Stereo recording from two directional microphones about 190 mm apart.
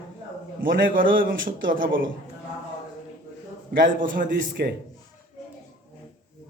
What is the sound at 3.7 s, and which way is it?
A man's voice, 45° right (ahead or behind).